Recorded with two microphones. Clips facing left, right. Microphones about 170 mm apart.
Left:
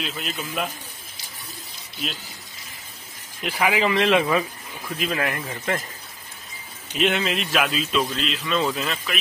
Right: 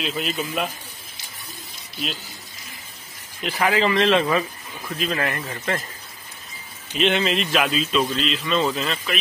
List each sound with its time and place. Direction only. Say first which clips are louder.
0.0 s speech: right 5 dB; centre (ahead or behind)
3.4 s speech: right 1 dB; 10° left (ahead or behind)
7.0 s speech: right 2 dB; 5° left (ahead or behind)